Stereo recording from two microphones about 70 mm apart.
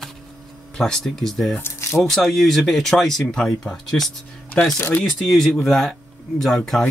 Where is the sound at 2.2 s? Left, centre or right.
Centre.